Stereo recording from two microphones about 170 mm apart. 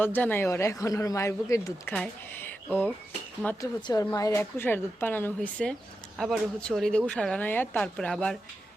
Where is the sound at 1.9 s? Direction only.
10° left (ahead or behind).